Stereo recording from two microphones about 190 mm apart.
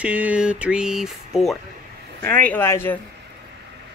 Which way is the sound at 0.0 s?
5° right (ahead or behind).